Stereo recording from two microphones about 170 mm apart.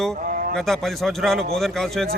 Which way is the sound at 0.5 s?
Centre (ahead or behind).